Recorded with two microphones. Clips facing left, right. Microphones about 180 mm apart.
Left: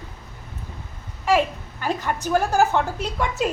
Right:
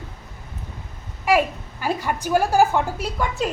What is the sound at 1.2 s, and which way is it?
A child's voice, 10° right (ahead or behind).